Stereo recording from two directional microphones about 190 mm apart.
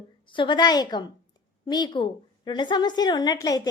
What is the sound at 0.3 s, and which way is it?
A woman's voice, 25° left (ahead or behind).